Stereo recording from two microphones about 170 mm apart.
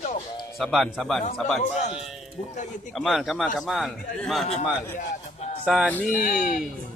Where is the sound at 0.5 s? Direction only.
Centre (ahead or behind).